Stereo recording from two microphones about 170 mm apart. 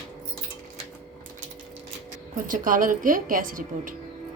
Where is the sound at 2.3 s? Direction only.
50° right (ahead or behind).